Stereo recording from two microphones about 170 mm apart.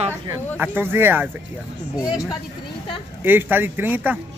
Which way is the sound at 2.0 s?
20° left (ahead or behind).